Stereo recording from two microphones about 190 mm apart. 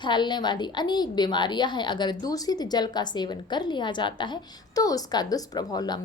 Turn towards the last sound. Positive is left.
turn(degrees=20)  # may be behind; listen again after turning